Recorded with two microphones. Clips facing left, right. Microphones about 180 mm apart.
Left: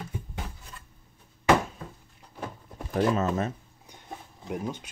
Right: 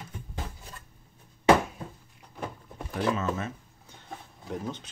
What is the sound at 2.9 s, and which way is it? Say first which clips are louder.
Speech: left 4 dB; 40° left (ahead or behind).